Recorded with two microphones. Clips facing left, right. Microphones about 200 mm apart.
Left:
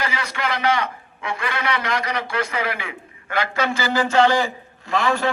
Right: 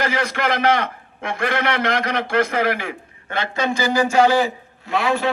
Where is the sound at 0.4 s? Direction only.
55° right (ahead or behind).